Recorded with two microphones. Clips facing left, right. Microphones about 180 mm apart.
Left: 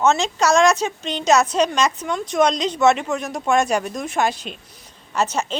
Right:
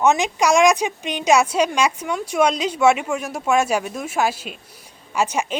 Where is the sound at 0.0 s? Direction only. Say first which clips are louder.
Right 1 dB; 15° right (ahead or behind).